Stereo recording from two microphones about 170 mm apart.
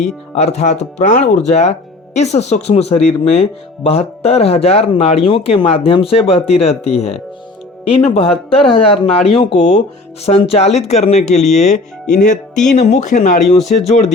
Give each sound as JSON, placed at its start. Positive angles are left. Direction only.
{"t": 0.0, "sound": "speech", "side_deg": 40}